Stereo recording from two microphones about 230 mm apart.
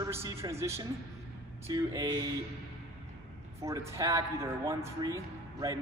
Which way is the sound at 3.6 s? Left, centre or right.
Centre.